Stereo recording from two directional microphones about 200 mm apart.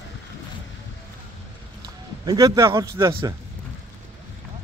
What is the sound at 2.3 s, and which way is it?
Speech, 15° right (ahead or behind).